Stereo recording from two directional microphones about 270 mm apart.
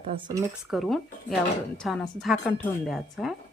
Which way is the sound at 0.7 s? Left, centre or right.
Centre.